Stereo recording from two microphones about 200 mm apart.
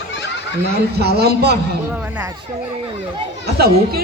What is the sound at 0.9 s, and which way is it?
Speech, 55° right (ahead or behind).